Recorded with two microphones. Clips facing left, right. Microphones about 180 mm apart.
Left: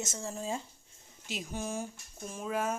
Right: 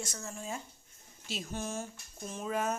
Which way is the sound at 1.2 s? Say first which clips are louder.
Left 1 dB; 15° left (ahead or behind).